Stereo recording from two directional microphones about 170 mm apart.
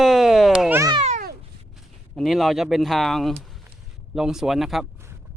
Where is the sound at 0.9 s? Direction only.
40° right (ahead or behind).